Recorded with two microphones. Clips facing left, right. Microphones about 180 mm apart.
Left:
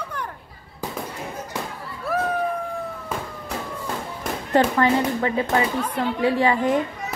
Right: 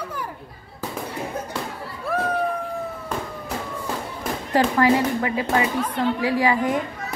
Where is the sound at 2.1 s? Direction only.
Centre (ahead or behind).